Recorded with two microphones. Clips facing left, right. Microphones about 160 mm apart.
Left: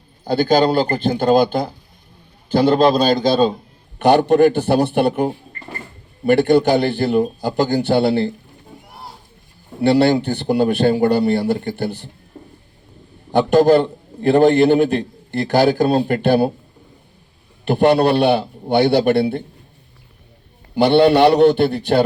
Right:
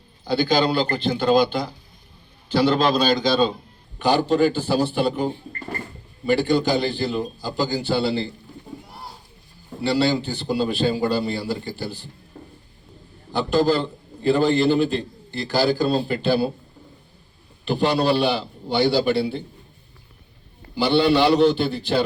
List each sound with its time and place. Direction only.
0.3 s speech: 50° left (ahead or behind)
3.9 s a man's voice: 65° left (ahead or behind)
9.8 s a man's voice: 60° left (ahead or behind)
13.3 s a man's voice: 65° left (ahead or behind)
17.7 s a man's voice: 60° left (ahead or behind)
20.7 s a man's voice: 65° left (ahead or behind)